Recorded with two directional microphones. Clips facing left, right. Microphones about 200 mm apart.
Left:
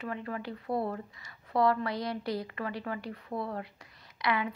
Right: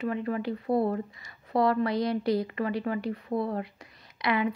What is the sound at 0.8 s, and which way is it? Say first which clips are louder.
Speech: right 7 dB; 30° right (ahead or behind).